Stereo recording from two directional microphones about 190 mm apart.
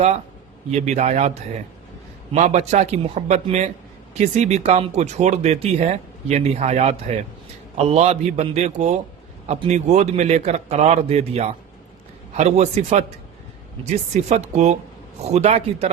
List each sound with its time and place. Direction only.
0.7 s speech: 35° right (ahead or behind)